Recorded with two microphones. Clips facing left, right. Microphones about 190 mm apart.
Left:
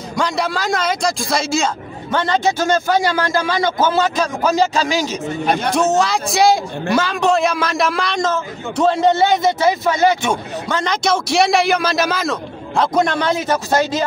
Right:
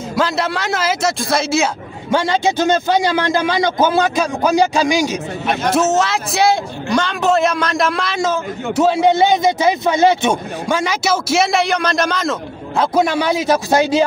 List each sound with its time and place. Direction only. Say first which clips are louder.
0.1 s a man's voice: right 1 dB; centre (ahead or behind); by 10.3 s 20° right (ahead or behind)
10.7 s a man's voice: right 1 dB; 10° right (ahead or behind)